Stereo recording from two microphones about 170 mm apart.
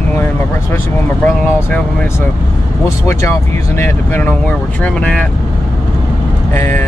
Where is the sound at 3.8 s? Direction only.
15° left (ahead or behind).